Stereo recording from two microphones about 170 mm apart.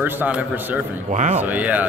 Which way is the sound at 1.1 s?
45° right (ahead or behind).